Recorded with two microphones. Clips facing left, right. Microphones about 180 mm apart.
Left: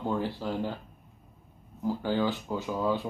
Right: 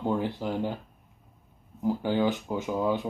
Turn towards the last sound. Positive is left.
turn(degrees=-15)  # may be behind; listen again after turning